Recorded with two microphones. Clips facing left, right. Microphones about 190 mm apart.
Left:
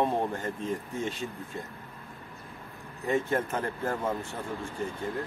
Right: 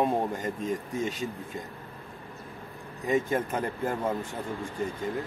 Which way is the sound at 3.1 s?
10° right (ahead or behind).